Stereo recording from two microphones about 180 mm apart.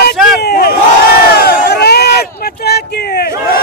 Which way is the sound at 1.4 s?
60° left (ahead or behind).